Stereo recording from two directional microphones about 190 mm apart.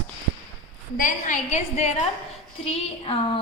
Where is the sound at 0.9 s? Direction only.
45° left (ahead or behind).